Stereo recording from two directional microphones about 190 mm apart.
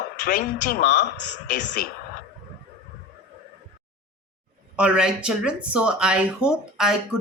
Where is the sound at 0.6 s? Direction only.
50° left (ahead or behind).